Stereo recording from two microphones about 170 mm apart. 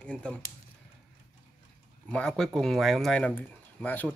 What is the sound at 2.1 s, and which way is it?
Speech, 5° left (ahead or behind).